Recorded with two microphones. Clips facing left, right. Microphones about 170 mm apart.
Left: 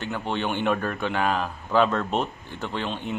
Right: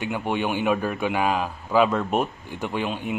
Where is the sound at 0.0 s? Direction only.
10° right (ahead or behind).